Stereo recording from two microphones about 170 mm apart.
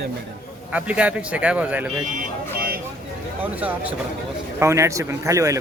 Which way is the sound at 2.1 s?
60° right (ahead or behind).